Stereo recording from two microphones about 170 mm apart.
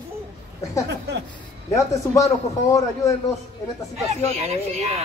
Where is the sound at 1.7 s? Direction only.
20° left (ahead or behind).